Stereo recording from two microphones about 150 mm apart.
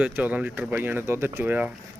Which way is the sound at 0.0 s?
10° right (ahead or behind).